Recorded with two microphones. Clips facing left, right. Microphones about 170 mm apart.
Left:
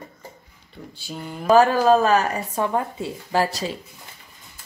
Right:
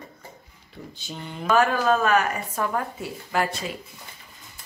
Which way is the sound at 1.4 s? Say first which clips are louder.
Left 5 dB; 35° left (ahead or behind).